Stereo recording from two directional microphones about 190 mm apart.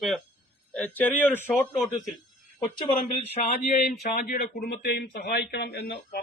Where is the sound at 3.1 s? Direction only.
35° left (ahead or behind).